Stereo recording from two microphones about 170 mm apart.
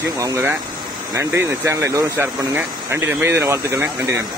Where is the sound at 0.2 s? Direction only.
20° right (ahead or behind).